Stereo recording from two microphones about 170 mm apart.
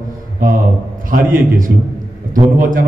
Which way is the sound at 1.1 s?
55° right (ahead or behind).